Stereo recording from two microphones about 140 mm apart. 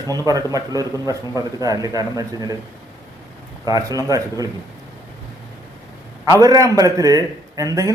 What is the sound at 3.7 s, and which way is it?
Speech, 25° right (ahead or behind).